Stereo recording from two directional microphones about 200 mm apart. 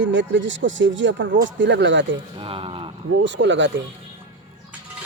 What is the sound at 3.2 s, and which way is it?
Speech, 65° right (ahead or behind).